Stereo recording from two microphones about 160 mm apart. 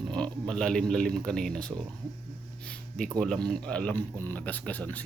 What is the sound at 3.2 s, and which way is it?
Speech, 5° left (ahead or behind).